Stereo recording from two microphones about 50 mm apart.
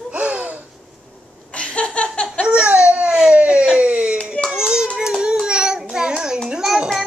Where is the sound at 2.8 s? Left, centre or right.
Right.